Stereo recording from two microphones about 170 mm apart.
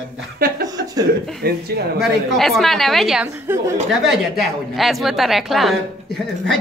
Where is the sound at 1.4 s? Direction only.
75° right (ahead or behind).